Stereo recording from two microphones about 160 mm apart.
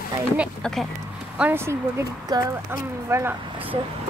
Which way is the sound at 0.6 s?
5° left (ahead or behind).